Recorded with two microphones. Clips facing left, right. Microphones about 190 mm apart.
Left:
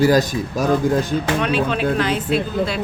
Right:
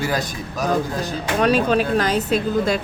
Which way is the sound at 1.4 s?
40° right (ahead or behind).